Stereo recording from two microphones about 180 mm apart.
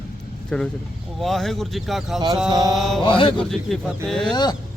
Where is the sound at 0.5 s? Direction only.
5° left (ahead or behind).